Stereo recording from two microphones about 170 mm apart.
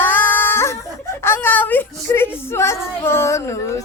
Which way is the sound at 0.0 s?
10° left (ahead or behind).